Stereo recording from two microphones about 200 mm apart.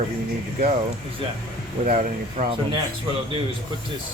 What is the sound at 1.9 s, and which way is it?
Speech, 40° right (ahead or behind).